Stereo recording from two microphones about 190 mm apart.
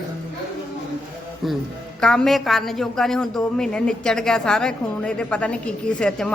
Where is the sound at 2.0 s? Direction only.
5° left (ahead or behind).